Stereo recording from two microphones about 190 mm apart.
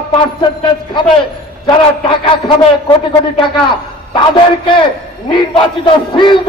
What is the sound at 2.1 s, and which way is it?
A man's voice, 25° left (ahead or behind).